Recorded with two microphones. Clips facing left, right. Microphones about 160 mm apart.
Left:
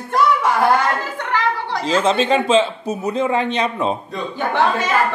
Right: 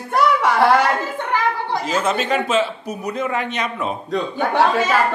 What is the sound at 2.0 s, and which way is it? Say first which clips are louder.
A man's voice: left 5 dB; 30° left (ahead or behind).